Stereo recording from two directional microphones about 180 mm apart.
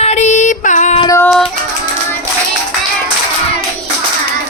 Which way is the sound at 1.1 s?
15° left (ahead or behind).